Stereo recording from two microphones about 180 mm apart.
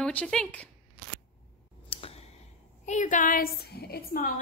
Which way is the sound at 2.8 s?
40° left (ahead or behind).